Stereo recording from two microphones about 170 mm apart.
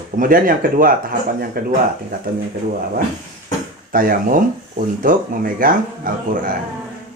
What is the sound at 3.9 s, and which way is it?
Speech, 55° right (ahead or behind).